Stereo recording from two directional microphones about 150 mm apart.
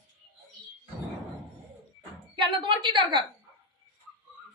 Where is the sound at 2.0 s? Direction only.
30° right (ahead or behind).